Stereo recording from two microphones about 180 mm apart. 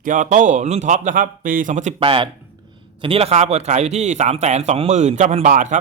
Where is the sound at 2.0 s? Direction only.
30° right (ahead or behind).